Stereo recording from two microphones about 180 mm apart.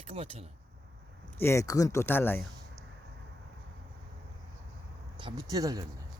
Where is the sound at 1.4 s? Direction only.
15° left (ahead or behind).